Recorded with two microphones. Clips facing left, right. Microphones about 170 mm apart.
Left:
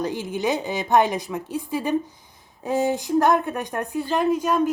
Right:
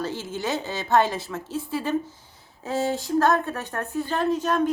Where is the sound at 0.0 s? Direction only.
15° left (ahead or behind).